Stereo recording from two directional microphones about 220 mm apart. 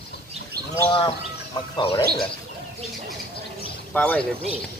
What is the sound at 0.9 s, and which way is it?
Speech, 20° left (ahead or behind).